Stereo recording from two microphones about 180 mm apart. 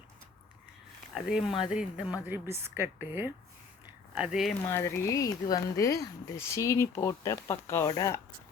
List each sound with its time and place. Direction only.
1.1 s speech: centre (ahead or behind)
4.7 s speech: 15° left (ahead or behind)